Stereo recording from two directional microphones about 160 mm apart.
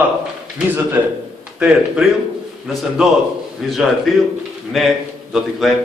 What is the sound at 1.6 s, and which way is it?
A man's voice, 5° right (ahead or behind).